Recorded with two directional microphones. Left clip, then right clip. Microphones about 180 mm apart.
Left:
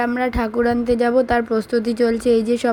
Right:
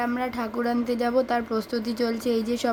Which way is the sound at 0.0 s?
20° left (ahead or behind).